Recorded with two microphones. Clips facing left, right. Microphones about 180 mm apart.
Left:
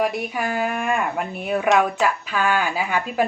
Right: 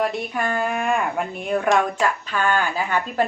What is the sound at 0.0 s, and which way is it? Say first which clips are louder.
Speech: even; 10° left (ahead or behind).